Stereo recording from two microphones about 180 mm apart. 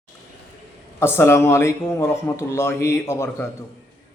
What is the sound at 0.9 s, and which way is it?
Speech, 15° left (ahead or behind).